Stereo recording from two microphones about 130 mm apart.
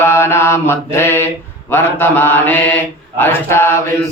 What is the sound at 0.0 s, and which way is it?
Mantra, 20° left (ahead or behind).